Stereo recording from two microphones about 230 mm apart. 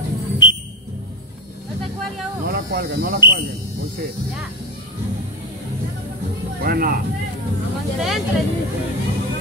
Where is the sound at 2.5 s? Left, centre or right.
Right.